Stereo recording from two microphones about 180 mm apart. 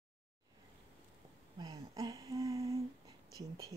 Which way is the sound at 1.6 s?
20° right (ahead or behind).